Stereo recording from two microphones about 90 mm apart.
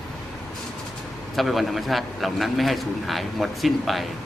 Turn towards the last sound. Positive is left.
turn(degrees=0)  # may be behind; listen again after turning